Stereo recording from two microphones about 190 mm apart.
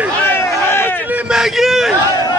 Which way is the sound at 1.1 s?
5° right (ahead or behind).